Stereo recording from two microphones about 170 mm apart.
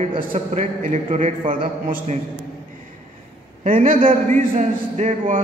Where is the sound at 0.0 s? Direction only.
35° right (ahead or behind).